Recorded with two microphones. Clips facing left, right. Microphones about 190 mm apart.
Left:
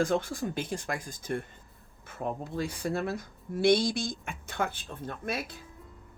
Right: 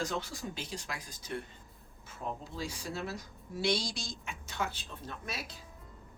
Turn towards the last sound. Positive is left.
turn(degrees=55)  # may be behind; listen again after turning